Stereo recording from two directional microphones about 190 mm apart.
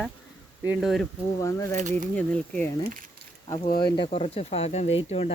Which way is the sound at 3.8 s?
25° left (ahead or behind).